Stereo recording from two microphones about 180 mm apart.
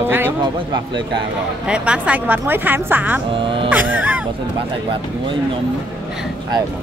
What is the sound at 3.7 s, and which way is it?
Music, 10° right (ahead or behind).